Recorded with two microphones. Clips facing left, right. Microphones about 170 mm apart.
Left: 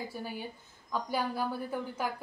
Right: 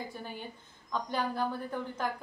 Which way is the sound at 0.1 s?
10° left (ahead or behind).